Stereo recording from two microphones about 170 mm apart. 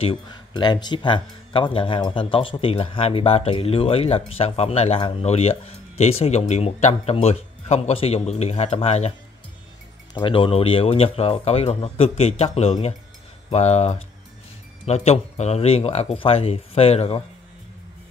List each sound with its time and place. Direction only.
0.0 s speech: 30° left (ahead or behind)
10.1 s speech: 30° left (ahead or behind)